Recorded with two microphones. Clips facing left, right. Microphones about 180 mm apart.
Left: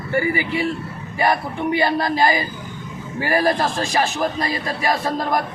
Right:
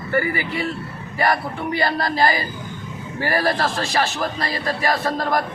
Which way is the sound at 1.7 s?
15° left (ahead or behind).